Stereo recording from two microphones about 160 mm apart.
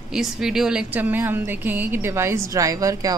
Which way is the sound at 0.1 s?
5° right (ahead or behind).